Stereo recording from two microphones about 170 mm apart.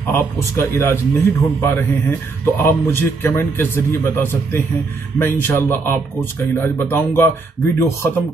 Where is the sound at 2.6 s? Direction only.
15° left (ahead or behind).